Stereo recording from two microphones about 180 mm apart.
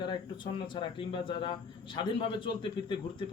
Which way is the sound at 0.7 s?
25° left (ahead or behind).